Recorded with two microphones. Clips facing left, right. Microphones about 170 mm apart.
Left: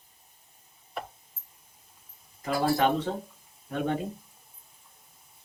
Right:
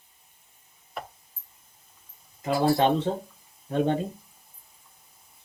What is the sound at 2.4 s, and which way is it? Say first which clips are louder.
Speech: right 3 dB; 25° right (ahead or behind).